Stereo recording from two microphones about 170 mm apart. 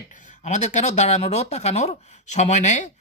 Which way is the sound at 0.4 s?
45° left (ahead or behind).